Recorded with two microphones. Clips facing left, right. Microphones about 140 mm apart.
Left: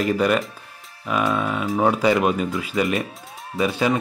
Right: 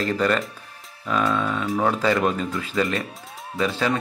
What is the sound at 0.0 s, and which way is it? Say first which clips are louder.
Speech: left 2 dB; 10° left (ahead or behind).